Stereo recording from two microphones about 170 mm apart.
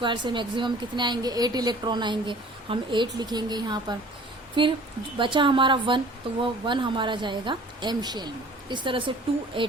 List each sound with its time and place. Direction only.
0.0 s a woman's voice: 25° right (ahead or behind)